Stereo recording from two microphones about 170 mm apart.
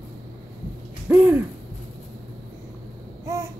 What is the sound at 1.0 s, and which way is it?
Hoot, 10° right (ahead or behind).